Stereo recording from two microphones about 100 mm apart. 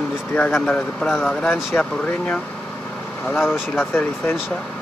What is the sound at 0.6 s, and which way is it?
Speech, 5° left (ahead or behind).